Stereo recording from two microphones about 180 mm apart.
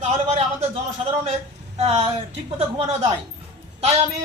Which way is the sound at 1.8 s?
35° right (ahead or behind).